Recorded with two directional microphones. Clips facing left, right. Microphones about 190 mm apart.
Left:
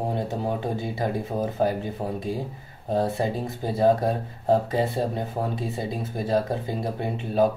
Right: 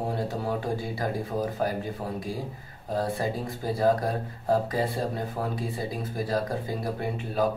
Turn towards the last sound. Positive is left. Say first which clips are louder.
# left 4 dB
turn(degrees=25)  # may be behind; listen again after turning